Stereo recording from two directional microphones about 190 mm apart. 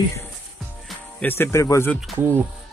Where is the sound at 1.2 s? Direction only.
10° left (ahead or behind).